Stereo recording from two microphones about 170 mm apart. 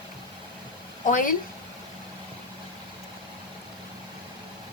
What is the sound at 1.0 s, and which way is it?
Speech, 50° left (ahead or behind).